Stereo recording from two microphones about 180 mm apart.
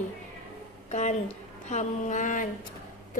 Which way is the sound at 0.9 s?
40° left (ahead or behind).